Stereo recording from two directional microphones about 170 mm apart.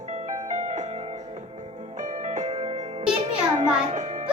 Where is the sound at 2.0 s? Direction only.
45° right (ahead or behind).